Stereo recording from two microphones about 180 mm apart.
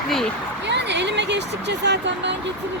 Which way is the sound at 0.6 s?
75° right (ahead or behind).